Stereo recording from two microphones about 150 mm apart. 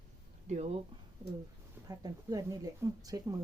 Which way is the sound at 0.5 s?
45° right (ahead or behind).